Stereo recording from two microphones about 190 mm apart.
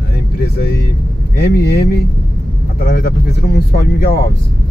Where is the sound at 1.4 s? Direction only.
55° left (ahead or behind).